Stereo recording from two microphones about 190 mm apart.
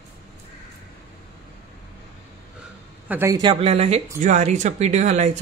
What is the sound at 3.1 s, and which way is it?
Speech, 15° right (ahead or behind).